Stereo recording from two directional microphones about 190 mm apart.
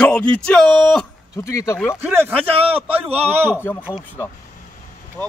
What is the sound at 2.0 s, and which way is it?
A man's voice, 10° right (ahead or behind).